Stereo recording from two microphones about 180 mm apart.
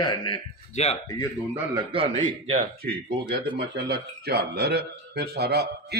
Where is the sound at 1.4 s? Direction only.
20° right (ahead or behind); by 2.6 s 35° right (ahead or behind).